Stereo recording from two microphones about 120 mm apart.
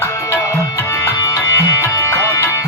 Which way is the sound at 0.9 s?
25° left (ahead or behind).